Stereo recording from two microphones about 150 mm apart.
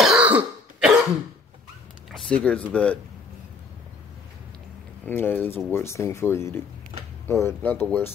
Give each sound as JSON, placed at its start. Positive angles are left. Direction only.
{"t": 0.0, "sound": "throat clearing", "side_deg": -5}
{"t": 2.0, "sound": "speech", "side_deg": 5}
{"t": 5.0, "sound": "speech", "side_deg": 15}